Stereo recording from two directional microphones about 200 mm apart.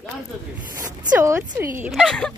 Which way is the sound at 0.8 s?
15° right (ahead or behind).